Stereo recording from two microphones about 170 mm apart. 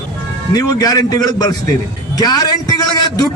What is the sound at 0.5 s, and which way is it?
A man's voice, 20° left (ahead or behind).